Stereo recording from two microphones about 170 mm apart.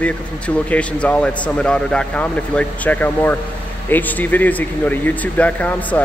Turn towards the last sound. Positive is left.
turn(degrees=10)  # may be behind; listen again after turning